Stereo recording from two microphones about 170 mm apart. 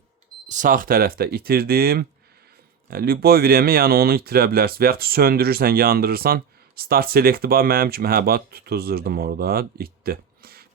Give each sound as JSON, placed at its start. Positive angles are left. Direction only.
{"t": 0.4, "sound": "speech", "side_deg": -50}